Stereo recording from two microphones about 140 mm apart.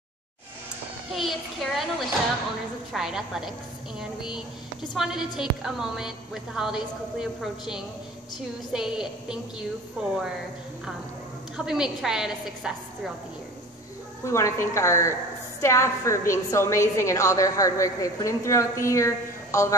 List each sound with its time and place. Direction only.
1.1 s a child's voice: centre (ahead or behind)
11.5 s a woman's voice: 5° right (ahead or behind)
14.2 s a woman's voice: 20° left (ahead or behind)